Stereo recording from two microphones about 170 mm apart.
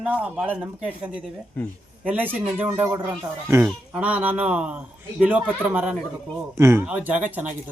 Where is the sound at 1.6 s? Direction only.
10° left (ahead or behind).